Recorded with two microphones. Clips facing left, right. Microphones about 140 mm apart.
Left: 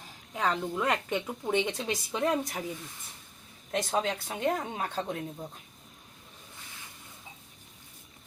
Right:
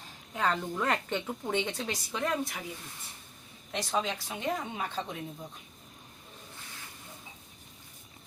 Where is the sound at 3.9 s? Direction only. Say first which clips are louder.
Right 1 dB; 45° left (ahead or behind).